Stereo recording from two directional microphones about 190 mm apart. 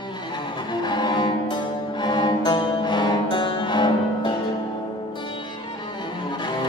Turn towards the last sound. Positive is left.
turn(degrees=25)  # may be behind; listen again after turning